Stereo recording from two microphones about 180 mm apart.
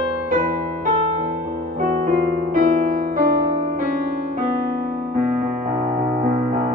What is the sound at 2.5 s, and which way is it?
Music, 45° right (ahead or behind).